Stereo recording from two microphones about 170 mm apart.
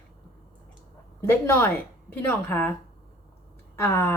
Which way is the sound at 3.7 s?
15° left (ahead or behind).